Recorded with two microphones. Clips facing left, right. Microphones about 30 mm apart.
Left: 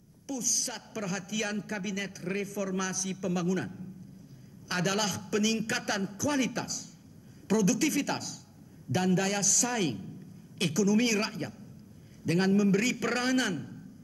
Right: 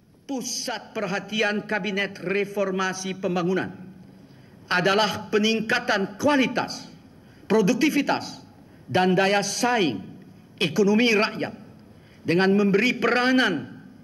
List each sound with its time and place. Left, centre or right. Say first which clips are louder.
0.3 s a man's voice: right 5 dB; right